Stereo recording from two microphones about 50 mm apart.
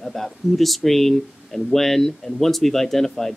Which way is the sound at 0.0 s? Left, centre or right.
Centre.